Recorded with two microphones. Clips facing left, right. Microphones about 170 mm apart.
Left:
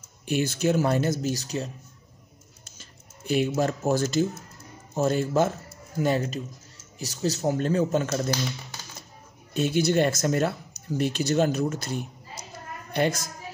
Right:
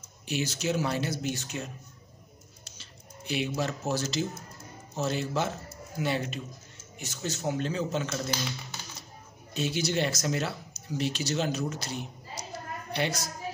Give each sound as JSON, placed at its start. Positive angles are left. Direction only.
{"t": 0.3, "sound": "speech", "side_deg": 55}
{"t": 2.6, "sound": "a sound", "side_deg": 50}
{"t": 4.9, "sound": "a man's voice", "side_deg": 50}
{"t": 9.5, "sound": "speech", "side_deg": 55}